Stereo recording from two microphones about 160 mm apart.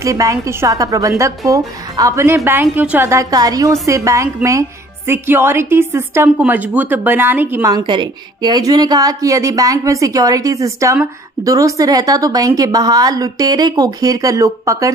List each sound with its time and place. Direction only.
0.0 s a woman's voice: 20° right (ahead or behind)